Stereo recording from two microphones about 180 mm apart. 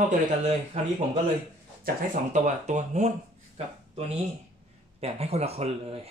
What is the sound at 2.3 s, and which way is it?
Speech, 40° right (ahead or behind).